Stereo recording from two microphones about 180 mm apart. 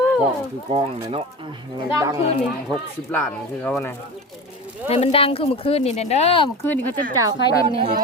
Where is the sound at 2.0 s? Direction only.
20° right (ahead or behind).